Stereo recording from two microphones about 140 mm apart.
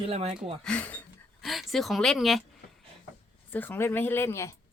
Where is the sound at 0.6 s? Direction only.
10° left (ahead or behind).